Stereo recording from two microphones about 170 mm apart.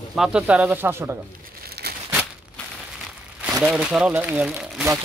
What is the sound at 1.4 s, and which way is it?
Crumpling, 65° right (ahead or behind).